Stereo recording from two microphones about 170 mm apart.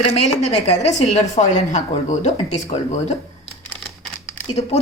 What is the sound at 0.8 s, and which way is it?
Speech, 40° left (ahead or behind).